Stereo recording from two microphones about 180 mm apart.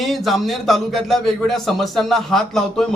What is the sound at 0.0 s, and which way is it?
Speech, centre (ahead or behind).